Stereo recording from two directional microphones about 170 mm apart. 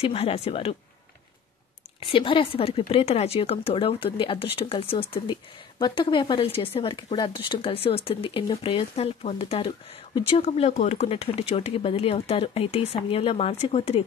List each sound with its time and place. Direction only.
0.0 s speech: 35° left (ahead or behind)
2.0 s speech: 30° left (ahead or behind)
10.4 s speech: 40° left (ahead or behind)